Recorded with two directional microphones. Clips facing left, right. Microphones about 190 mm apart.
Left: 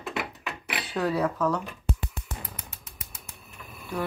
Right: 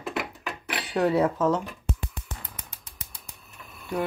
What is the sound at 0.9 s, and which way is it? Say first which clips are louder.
Speech: right 4 dB; 20° right (ahead or behind).